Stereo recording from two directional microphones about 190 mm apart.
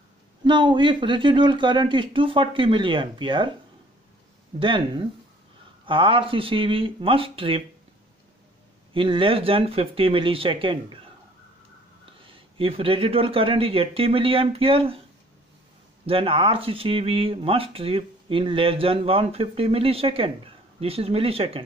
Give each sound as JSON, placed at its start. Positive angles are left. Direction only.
{"t": 0.4, "sound": "speech", "side_deg": -25}
{"t": 4.6, "sound": "speech", "side_deg": -25}
{"t": 8.9, "sound": "speech", "side_deg": -25}
{"t": 12.5, "sound": "speech", "side_deg": -30}
{"t": 16.1, "sound": "speech", "side_deg": -30}